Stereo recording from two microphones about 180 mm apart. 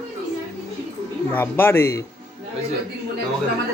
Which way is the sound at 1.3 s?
10° left (ahead or behind).